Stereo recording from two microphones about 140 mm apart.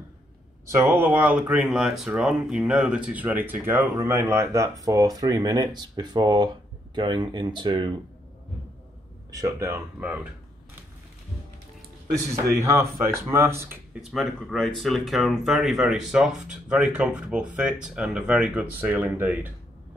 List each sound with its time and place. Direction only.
0.7 s speech: 15° right (ahead or behind); by 7.9 s 35° right (ahead or behind)
9.3 s speech: 25° right (ahead or behind)
12.5 s speech: 20° right (ahead or behind)
14.1 s speech: centre (ahead or behind)